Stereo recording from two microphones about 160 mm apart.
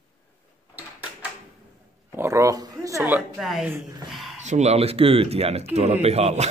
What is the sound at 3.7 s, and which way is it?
Speech, 15° right (ahead or behind).